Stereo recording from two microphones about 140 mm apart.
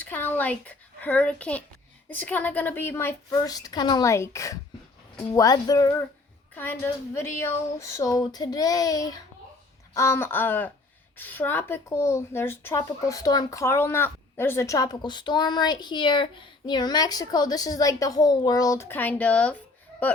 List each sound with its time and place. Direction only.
0.0 s a child's voice: 15° left (ahead or behind)
6.6 s a woman's voice: 15° left (ahead or behind)